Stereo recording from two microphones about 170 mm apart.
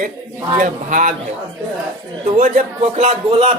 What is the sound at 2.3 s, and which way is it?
A man's voice, 45° right (ahead or behind).